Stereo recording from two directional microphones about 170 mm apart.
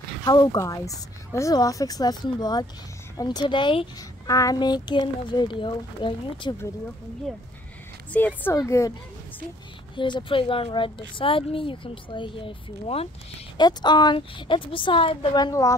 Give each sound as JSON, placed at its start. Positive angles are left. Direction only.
{"t": 0.2, "sound": "speech", "side_deg": 25}
{"t": 8.1, "sound": "a woman's voice", "side_deg": 10}
{"t": 9.9, "sound": "speech", "side_deg": 25}
{"t": 13.6, "sound": "speech", "side_deg": 25}